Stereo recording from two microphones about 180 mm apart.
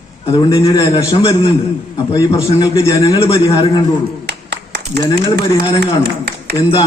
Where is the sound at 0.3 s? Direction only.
25° left (ahead or behind).